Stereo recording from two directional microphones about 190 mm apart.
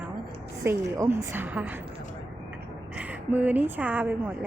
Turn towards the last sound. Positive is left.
turn(degrees=-10)  # may be behind; listen again after turning